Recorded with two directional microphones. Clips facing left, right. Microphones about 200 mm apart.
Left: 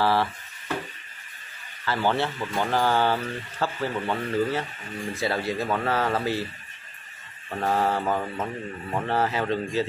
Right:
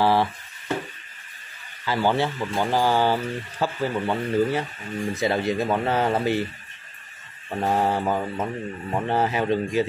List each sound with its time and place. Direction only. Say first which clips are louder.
0.0 s a sound: right 3 dB; 15° right (ahead or behind)
1.9 s speech: right 2 dB; 10° right (ahead or behind)
7.4 s speech: right 2 dB; 15° right (ahead or behind)